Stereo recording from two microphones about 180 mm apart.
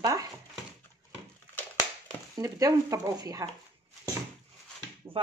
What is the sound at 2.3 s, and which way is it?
Speech, 20° right (ahead or behind).